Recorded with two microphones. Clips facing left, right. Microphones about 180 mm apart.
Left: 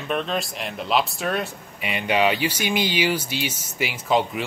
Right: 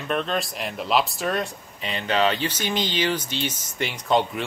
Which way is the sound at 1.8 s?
10° left (ahead or behind).